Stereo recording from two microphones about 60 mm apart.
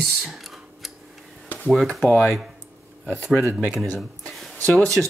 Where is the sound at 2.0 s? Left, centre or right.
Centre.